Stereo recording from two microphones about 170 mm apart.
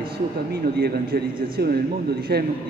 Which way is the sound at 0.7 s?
70° right (ahead or behind).